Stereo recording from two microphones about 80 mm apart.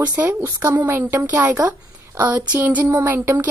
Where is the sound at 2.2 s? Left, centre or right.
Centre.